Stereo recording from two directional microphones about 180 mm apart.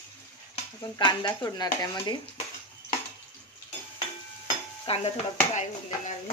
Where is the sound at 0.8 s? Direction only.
25° left (ahead or behind).